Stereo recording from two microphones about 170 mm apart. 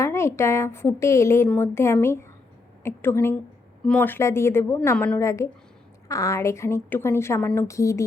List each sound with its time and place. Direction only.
0.0 s a woman's voice: 15° left (ahead or behind)